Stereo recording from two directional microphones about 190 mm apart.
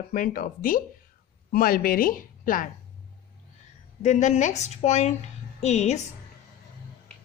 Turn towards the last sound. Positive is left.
turn(degrees=35)  # may be behind; listen again after turning